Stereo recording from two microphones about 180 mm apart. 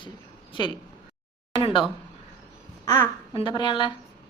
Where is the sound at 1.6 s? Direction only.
25° left (ahead or behind).